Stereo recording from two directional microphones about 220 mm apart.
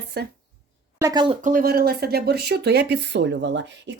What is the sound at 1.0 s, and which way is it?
Speech, 15° right (ahead or behind).